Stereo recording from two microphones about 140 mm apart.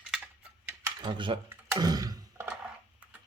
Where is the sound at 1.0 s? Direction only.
35° right (ahead or behind).